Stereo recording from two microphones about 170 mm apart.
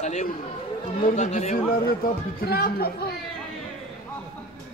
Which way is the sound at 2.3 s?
60° left (ahead or behind).